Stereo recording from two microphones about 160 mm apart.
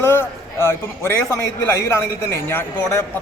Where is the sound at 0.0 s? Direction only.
15° left (ahead or behind).